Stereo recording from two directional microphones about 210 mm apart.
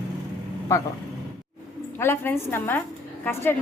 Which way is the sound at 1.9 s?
10° left (ahead or behind).